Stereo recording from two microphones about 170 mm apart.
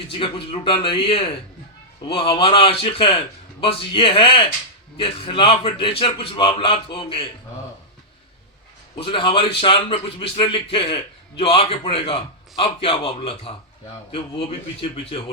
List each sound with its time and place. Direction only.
0.1 s a man's voice: 30° left (ahead or behind)
9.0 s a man's voice: 30° left (ahead or behind)
14.8 s a man's voice: 35° left (ahead or behind)